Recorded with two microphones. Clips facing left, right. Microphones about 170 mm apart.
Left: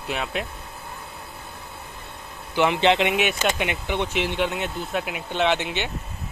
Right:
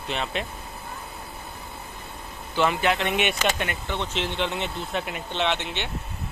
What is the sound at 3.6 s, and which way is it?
Speech, 15° left (ahead or behind).